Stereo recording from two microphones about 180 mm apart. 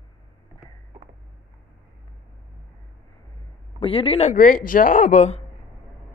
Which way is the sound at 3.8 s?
30° left (ahead or behind).